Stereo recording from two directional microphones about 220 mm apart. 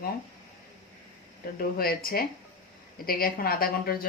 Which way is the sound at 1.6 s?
40° left (ahead or behind).